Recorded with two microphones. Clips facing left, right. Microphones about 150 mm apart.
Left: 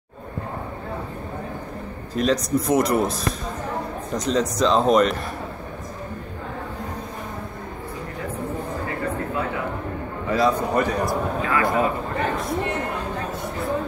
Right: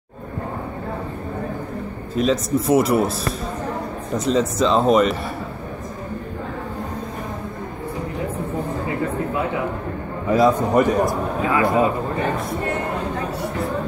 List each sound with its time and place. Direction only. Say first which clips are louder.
2.1 s speech: right 2 dB; centre (ahead or behind)
4.2 s speech: right 2 dB; 5° right (ahead or behind)
10.3 s a man's voice: right 4 dB; 20° right (ahead or behind)